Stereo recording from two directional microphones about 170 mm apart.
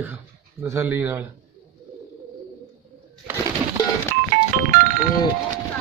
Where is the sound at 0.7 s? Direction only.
10° right (ahead or behind).